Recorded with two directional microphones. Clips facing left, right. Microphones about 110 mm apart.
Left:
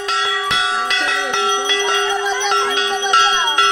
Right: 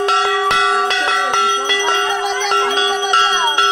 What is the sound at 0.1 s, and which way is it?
Church bell, 55° right (ahead or behind).